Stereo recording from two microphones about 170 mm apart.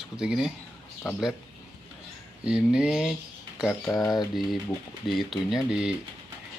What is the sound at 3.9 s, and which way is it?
Speech, 20° left (ahead or behind).